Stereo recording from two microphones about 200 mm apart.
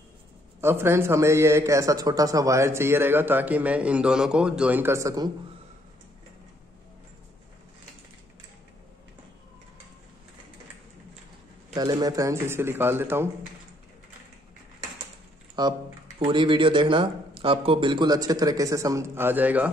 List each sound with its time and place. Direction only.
0.6 s a man's voice: 10° right (ahead or behind)
11.7 s a man's voice: 20° right (ahead or behind)
15.6 s speech: 20° right (ahead or behind)